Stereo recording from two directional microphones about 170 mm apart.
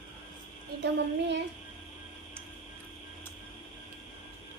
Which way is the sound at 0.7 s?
65° right (ahead or behind).